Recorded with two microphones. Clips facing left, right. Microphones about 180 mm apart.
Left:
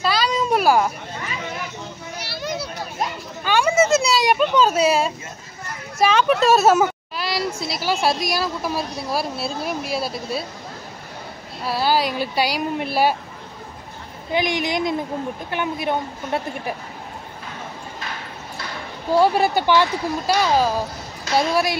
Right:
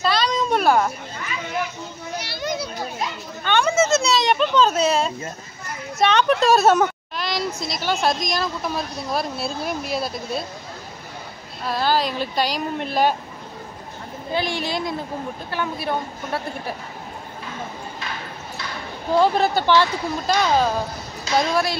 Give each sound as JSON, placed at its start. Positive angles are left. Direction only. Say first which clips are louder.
{"t": 0.0, "sound": "a sound", "louder": "even", "side_deg": 5}
{"t": 2.2, "sound": "children playing", "louder": "even", "side_deg": 5}
{"t": 3.4, "sound": "a sound", "louder": "left 1 dB", "side_deg": 10}
{"t": 5.9, "sound": "a woman's voice", "louder": "left 1 dB", "side_deg": 5}
{"t": 11.6, "sound": "speech", "louder": "left 1 dB", "side_deg": 10}
{"t": 14.3, "sound": "a woman's voice", "louder": "left 3 dB", "side_deg": 15}
{"t": 19.1, "sound": "speech", "louder": "left 1 dB", "side_deg": 10}